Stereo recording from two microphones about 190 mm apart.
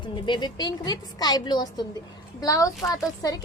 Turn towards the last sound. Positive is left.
turn(degrees=20)  # may be behind; listen again after turning